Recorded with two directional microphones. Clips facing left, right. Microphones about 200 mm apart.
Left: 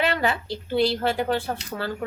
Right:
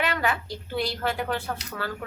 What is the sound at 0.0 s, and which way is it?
Speech, 30° left (ahead or behind).